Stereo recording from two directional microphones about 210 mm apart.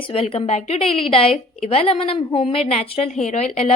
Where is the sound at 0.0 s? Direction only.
25° left (ahead or behind).